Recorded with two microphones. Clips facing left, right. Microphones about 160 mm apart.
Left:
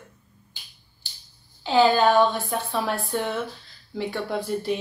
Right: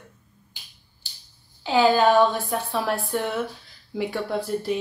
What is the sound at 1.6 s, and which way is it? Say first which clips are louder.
Speech: even; 5° right (ahead or behind).